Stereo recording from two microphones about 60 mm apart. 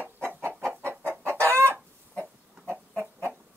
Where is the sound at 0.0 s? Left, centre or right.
Right.